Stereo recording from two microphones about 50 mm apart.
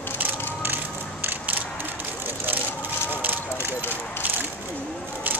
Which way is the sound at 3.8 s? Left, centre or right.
Left.